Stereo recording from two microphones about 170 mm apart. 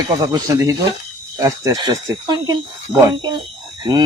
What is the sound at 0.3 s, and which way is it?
Speech, 20° right (ahead or behind).